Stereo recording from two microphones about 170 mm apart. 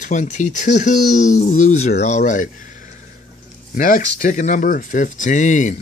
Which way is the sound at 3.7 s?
50° left (ahead or behind).